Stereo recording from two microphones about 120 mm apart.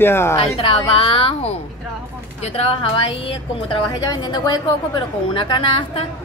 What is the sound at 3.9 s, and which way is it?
A woman's voice, 35° left (ahead or behind).